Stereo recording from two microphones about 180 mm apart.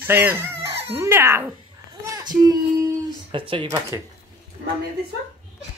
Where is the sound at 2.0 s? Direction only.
20° right (ahead or behind).